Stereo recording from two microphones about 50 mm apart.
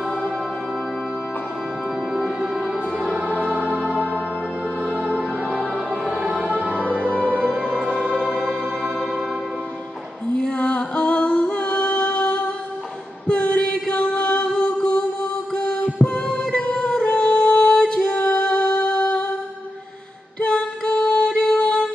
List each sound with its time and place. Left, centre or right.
2.1 s music: centre; by 7.4 s right
8.4 s music: centre
10.3 s singing: left
13.3 s chant: left
13.9 s music: left
20.3 s music: left